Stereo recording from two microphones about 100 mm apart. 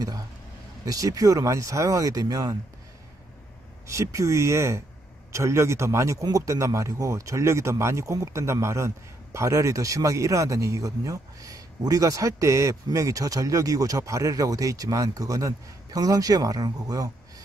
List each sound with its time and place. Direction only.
0.8 s speech: 35° right (ahead or behind)
3.8 s speech: 30° right (ahead or behind)